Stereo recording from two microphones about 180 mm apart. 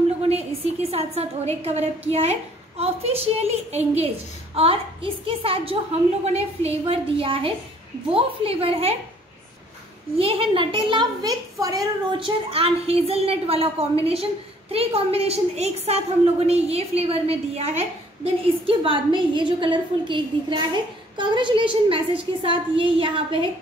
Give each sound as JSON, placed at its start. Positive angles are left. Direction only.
{"t": 0.2, "sound": "a woman's voice", "side_deg": -35}
{"t": 10.1, "sound": "a woman's voice", "side_deg": -30}
{"t": 12.4, "sound": "a woman's voice", "side_deg": -30}